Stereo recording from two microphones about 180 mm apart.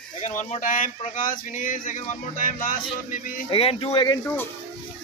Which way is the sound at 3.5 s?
30° left (ahead or behind).